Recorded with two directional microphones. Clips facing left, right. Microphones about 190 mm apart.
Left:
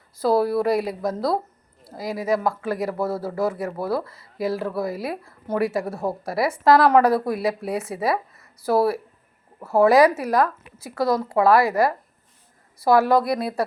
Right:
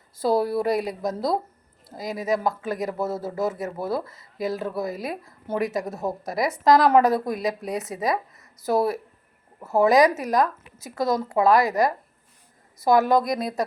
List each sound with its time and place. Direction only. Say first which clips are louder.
0.2 s speech: left 2 dB; 25° right (ahead or behind)